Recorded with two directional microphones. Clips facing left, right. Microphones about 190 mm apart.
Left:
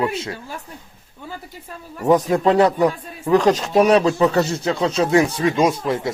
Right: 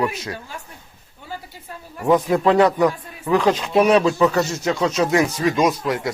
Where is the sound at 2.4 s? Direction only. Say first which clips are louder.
Even; 35° left (ahead or behind).